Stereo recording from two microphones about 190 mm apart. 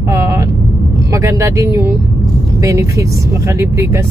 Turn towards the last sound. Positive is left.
turn(degrees=-15)  # may be behind; listen again after turning